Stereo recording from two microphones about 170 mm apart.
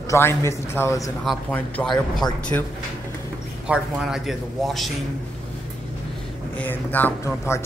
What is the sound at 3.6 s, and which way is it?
A man's voice, 5° right (ahead or behind).